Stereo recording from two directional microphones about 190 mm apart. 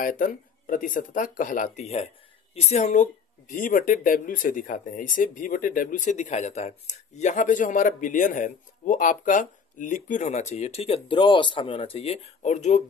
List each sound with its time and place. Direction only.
0.0 s speech: 45° left (ahead or behind)